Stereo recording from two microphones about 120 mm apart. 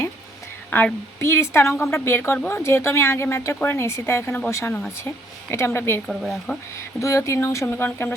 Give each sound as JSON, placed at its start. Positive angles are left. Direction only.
{"t": 0.7, "sound": "a woman's voice", "side_deg": 20}
{"t": 6.1, "sound": "speech", "side_deg": 0}
{"t": 6.7, "sound": "a woman's voice", "side_deg": 25}